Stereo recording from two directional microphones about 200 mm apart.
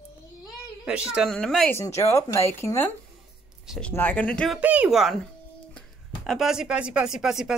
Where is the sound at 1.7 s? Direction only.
15° left (ahead or behind).